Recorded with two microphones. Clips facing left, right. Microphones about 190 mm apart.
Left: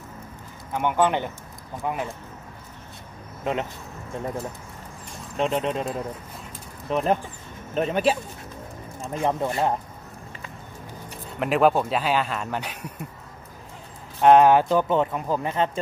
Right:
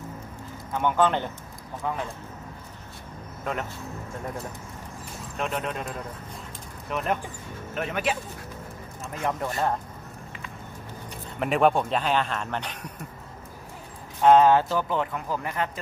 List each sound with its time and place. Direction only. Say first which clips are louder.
0.7 s speech: left 1 dB; 15° left (ahead or behind)
5.4 s speech: left 6 dB; 25° left (ahead or behind)
11.3 s speech: left 2 dB; centre (ahead or behind)
14.2 s speech: left 2 dB; 15° left (ahead or behind)